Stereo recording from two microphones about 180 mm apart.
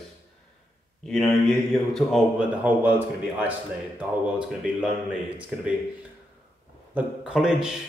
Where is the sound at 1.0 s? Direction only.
5° left (ahead or behind).